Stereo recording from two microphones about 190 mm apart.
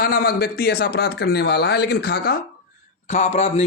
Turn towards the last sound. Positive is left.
turn(degrees=35)  # may be behind; listen again after turning